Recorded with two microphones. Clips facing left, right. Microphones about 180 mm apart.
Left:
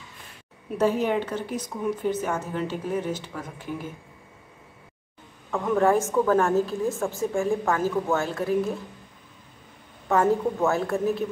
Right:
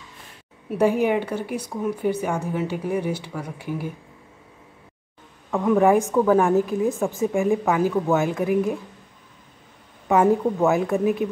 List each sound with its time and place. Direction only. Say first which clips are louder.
0.7 s a woman's voice: right 3 dB; 15° right (ahead or behind)
5.5 s a woman's voice: right 4 dB; 15° right (ahead or behind)
10.0 s a woman's voice: right 3 dB; 15° right (ahead or behind)